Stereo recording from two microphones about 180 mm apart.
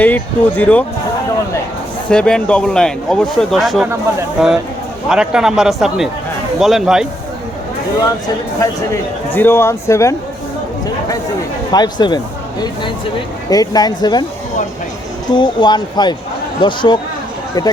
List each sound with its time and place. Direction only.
0.0 s speech: 10° left (ahead or behind)
2.0 s speech: 5° left (ahead or behind)
8.9 s speech: 10° left (ahead or behind)
11.7 s speech: 25° left (ahead or behind)
15.3 s speech: 25° left (ahead or behind)